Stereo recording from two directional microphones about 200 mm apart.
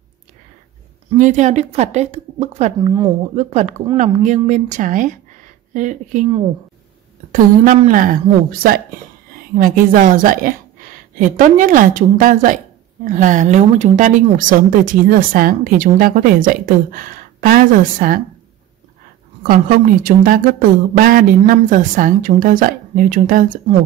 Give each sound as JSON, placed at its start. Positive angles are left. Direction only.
{"t": 1.1, "sound": "a woman's voice", "side_deg": -40}
{"t": 7.3, "sound": "a woman's voice", "side_deg": -40}
{"t": 19.4, "sound": "a woman's voice", "side_deg": -45}